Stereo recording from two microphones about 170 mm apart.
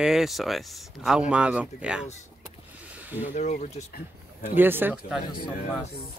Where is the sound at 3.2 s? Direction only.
45° left (ahead or behind).